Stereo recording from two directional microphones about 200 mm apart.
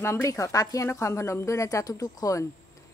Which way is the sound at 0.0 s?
15° left (ahead or behind).